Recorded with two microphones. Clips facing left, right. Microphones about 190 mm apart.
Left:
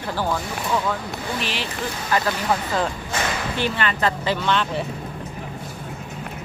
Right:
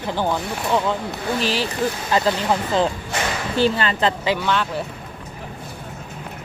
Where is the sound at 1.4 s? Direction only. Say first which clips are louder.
Right 7 dB; 35° right (ahead or behind).